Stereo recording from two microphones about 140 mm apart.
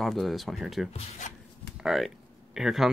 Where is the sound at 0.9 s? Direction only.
55° left (ahead or behind).